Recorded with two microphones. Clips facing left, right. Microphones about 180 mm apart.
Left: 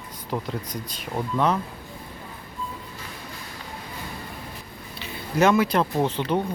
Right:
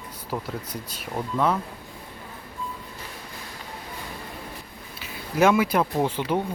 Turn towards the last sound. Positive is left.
turn(degrees=-10)  # may be behind; listen again after turning